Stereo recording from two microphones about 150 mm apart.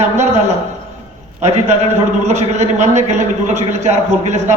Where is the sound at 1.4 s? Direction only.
50° right (ahead or behind).